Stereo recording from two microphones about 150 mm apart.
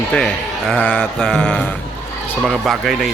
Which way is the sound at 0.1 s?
5° left (ahead or behind).